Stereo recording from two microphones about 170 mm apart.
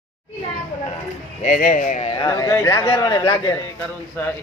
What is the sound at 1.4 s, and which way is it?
Speech, 50° left (ahead or behind).